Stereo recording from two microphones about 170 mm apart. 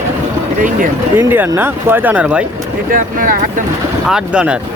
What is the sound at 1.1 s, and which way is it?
Speech, 10° right (ahead or behind).